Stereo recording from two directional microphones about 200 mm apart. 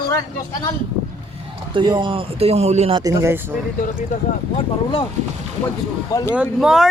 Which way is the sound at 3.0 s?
15° right (ahead or behind).